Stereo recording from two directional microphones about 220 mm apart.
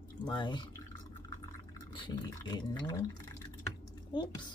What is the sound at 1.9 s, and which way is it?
Speech, 20° left (ahead or behind).